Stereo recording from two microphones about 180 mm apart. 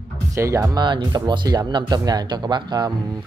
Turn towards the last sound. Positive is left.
turn(degrees=-25)  # may be behind; listen again after turning